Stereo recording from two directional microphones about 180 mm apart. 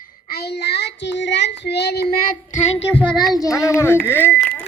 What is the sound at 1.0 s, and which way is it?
Child singing, 80° left.